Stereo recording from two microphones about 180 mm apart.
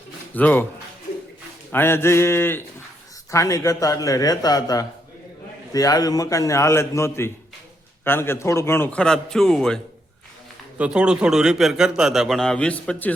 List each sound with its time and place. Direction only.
0.3 s a man's voice: 10° left (ahead or behind)
1.7 s a man's voice: 15° left (ahead or behind)